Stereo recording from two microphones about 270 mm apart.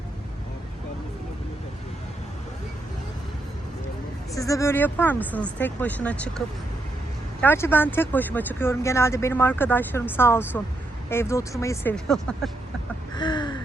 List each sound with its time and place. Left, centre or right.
4.4 s speech: centre
7.4 s speech: centre
13.1 s a sound: centre